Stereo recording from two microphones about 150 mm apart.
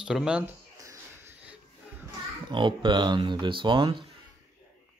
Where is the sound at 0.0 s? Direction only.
5° right (ahead or behind).